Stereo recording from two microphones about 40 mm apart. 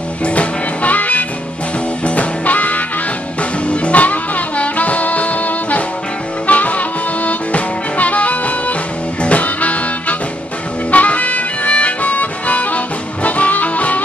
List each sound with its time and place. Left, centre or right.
0.2 s music: left